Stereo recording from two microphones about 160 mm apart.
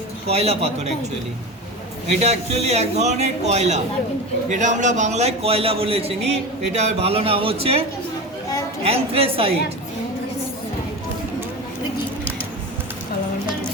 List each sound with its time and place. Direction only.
0.3 s a man's voice: 40° right (ahead or behind)
2.0 s a man's voice: 45° right (ahead or behind)